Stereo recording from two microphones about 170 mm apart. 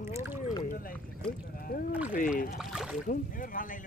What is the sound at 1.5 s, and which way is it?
Rowboat, 60° left (ahead or behind).